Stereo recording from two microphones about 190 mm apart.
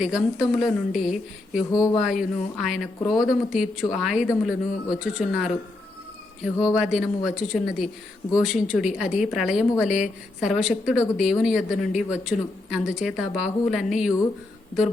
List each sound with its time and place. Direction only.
0.0 s speech: 5° right (ahead or behind)
1.7 s speech: 20° left (ahead or behind)
2.0 s speech: centre (ahead or behind)
6.7 s speech: 5° right (ahead or behind)